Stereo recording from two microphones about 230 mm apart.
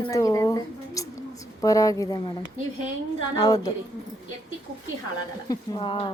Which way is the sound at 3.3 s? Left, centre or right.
Centre.